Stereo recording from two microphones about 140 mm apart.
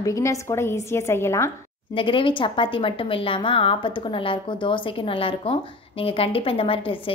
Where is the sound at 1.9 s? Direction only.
40° left (ahead or behind).